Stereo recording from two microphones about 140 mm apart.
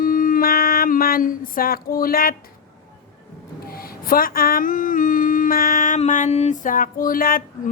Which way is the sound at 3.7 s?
90° left.